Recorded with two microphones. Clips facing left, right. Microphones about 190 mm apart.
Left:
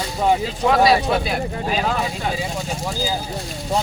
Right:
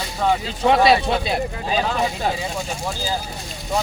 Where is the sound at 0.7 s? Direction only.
25° right (ahead or behind).